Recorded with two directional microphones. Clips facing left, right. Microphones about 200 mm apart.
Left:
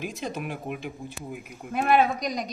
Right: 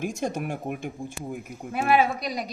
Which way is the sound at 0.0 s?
50° right (ahead or behind).